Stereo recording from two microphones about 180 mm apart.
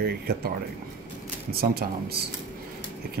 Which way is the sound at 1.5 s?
60° right (ahead or behind).